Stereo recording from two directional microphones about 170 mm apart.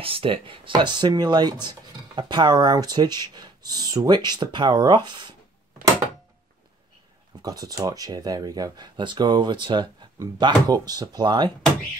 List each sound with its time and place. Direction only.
0.0 s speech: 30° right (ahead or behind)
7.4 s speech: 20° right (ahead or behind)